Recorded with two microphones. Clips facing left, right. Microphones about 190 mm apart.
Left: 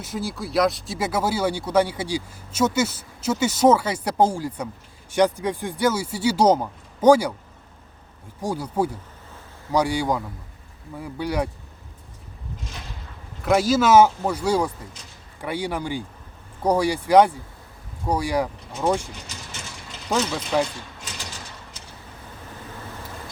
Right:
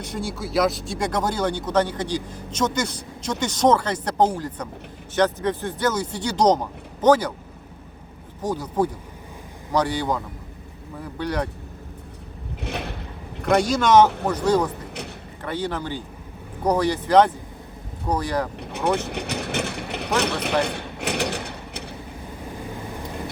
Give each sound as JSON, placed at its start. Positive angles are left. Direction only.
{"t": 0.0, "sound": "speech", "side_deg": 0}
{"t": 8.4, "sound": "speech", "side_deg": 10}
{"t": 12.5, "sound": "a sound", "side_deg": -65}
{"t": 13.4, "sound": "speech", "side_deg": 5}
{"t": 14.8, "sound": "a sound", "side_deg": -65}
{"t": 15.4, "sound": "speech", "side_deg": 10}
{"t": 18.5, "sound": "vehicle", "side_deg": -65}